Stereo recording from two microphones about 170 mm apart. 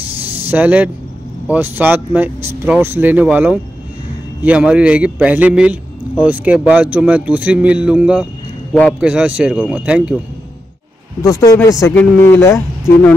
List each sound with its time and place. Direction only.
0.5 s a man's voice: 10° right (ahead or behind)
11.2 s speech: 20° left (ahead or behind)